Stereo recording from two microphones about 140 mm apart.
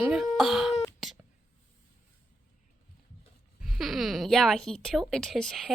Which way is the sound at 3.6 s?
Centre (ahead or behind).